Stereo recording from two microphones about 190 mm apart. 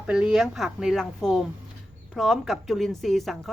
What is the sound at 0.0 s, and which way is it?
A woman's voice, 5° right (ahead or behind).